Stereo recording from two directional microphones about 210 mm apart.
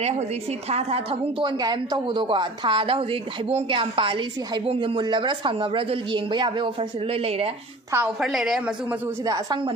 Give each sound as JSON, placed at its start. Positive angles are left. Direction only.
{"t": 0.7, "sound": "a woman's voice", "side_deg": -30}
{"t": 7.9, "sound": "a woman's voice", "side_deg": -5}
{"t": 9.2, "sound": "a woman's voice", "side_deg": -20}